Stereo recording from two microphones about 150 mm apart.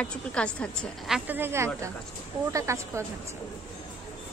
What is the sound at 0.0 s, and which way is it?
A woman's voice, 5° left (ahead or behind).